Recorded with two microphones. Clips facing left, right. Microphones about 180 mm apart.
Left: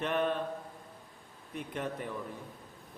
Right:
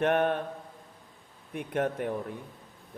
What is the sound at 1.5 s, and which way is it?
Speech, 55° right (ahead or behind).